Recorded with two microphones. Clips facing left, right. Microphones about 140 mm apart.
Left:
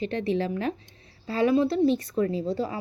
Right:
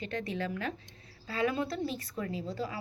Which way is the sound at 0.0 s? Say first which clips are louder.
Left 9 dB; 30° left (ahead or behind).